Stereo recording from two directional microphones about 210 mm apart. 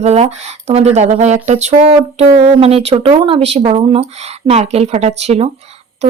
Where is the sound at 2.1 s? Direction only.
30° right (ahead or behind).